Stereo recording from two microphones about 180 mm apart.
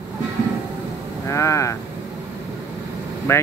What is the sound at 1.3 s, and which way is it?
Speech, 15° left (ahead or behind).